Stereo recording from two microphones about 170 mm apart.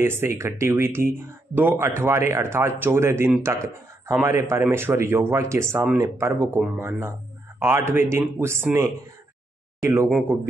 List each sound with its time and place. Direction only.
0.0 s a man's voice: 15° right (ahead or behind)